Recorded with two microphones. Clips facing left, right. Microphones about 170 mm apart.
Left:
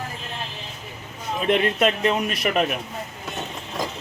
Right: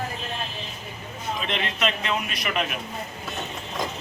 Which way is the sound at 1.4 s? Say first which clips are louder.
Left 9 dB; 50° left (ahead or behind).